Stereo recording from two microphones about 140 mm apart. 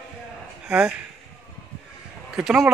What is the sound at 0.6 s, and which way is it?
Speech, 10° right (ahead or behind).